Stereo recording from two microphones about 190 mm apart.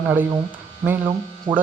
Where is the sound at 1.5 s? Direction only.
25° right (ahead or behind).